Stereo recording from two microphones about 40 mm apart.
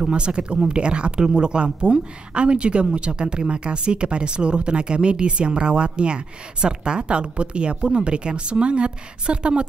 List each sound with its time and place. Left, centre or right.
0.0 s speech: right